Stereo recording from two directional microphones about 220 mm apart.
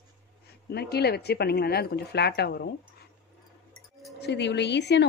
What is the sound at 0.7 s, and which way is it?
A woman's voice, 45° left (ahead or behind).